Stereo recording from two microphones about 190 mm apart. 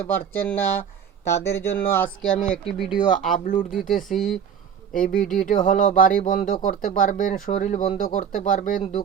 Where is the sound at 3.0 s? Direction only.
45° left (ahead or behind).